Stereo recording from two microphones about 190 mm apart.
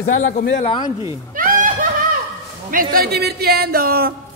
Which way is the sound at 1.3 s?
45° right (ahead or behind).